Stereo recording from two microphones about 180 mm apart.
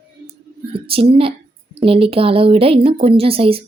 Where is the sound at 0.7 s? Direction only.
30° right (ahead or behind).